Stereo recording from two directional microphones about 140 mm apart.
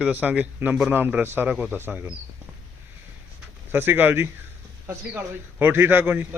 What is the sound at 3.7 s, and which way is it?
A man's voice, 15° right (ahead or behind).